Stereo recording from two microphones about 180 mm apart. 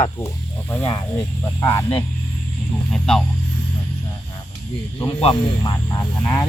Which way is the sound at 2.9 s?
5° left (ahead or behind).